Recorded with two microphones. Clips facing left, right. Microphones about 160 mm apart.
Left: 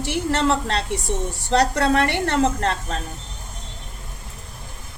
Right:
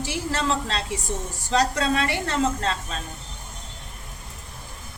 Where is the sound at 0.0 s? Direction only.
65° left (ahead or behind).